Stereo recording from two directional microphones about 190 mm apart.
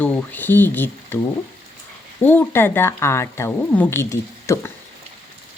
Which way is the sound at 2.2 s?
10° left (ahead or behind).